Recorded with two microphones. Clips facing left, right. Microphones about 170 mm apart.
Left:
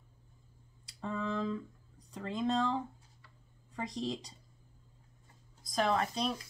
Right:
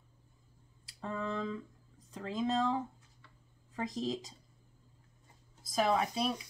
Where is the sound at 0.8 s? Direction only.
Centre (ahead or behind).